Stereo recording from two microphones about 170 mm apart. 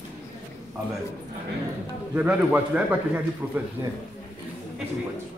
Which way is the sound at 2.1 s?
10° right (ahead or behind).